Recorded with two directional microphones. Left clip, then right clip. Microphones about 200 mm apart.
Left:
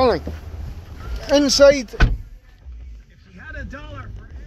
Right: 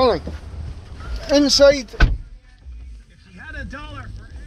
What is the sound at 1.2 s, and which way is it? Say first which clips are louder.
Speech: even; 40° left (ahead or behind).